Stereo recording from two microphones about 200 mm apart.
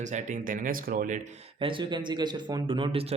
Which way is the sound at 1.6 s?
25° right (ahead or behind).